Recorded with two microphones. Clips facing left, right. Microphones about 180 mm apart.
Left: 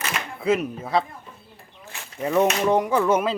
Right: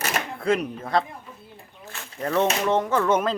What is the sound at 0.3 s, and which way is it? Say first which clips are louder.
Speech: left 3 dB; 5° left (ahead or behind).